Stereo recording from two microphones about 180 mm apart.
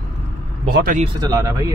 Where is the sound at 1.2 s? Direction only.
20° right (ahead or behind).